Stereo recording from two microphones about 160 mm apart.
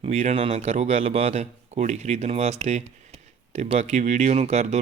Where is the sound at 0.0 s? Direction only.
40° right (ahead or behind).